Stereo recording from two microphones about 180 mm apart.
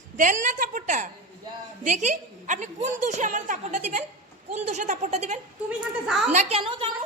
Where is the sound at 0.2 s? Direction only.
45° right (ahead or behind); by 6.9 s 30° right (ahead or behind).